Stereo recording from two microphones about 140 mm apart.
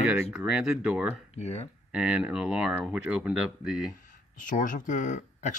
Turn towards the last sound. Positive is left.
turn(degrees=60)  # may be behind; listen again after turning